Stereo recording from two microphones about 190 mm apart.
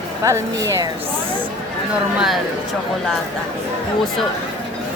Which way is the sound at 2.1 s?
Centre (ahead or behind).